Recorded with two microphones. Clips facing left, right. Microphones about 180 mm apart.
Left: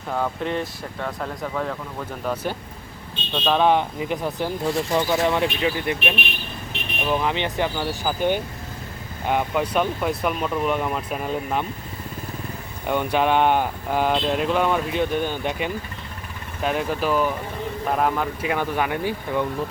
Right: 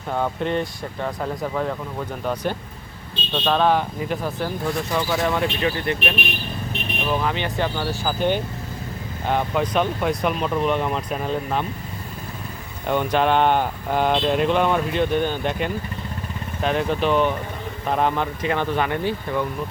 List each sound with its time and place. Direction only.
0.1 s speech: centre (ahead or behind)
3.3 s speech: 5° left (ahead or behind)
3.7 s speech: 20° left (ahead or behind)
12.9 s speech: 10° left (ahead or behind)